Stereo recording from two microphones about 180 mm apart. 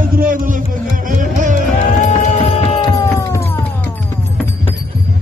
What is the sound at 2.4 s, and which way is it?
Music, 30° left (ahead or behind).